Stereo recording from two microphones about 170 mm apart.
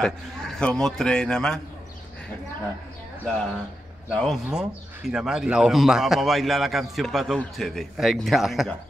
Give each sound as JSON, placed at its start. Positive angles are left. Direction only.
{"t": 0.0, "sound": "speech", "side_deg": 5}
{"t": 4.1, "sound": "speech", "side_deg": 0}